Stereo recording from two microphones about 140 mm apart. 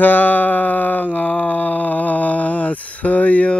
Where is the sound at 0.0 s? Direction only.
15° left (ahead or behind).